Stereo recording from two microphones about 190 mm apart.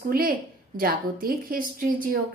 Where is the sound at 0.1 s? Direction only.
50° right (ahead or behind).